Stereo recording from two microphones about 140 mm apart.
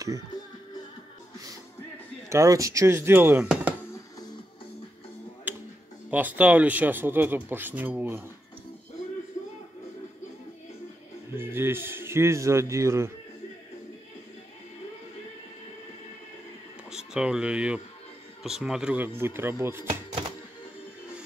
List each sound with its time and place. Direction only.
2.2 s speech: 20° right (ahead or behind)
5.5 s music: 15° right (ahead or behind)
6.0 s speech: 10° right (ahead or behind)
11.3 s speech: 15° right (ahead or behind)
16.9 s speech: 5° right (ahead or behind)
19.9 s chopping: 35° right (ahead or behind)